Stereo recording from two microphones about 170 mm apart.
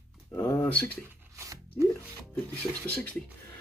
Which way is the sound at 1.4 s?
15° right (ahead or behind).